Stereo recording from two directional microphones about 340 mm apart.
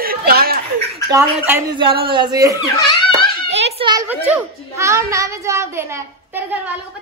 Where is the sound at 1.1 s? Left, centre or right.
Centre.